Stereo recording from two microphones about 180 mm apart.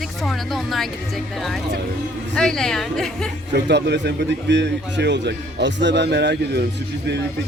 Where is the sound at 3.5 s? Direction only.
75° right (ahead or behind).